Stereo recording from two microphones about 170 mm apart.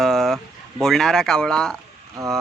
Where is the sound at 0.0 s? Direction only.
Centre (ahead or behind).